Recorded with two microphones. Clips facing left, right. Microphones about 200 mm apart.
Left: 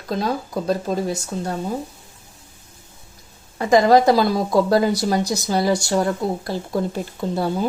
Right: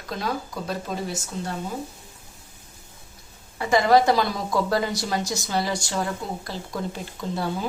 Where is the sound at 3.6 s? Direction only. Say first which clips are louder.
Left 4 dB; 40° left (ahead or behind).